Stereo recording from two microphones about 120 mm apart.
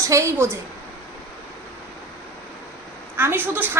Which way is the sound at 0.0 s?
25° right (ahead or behind).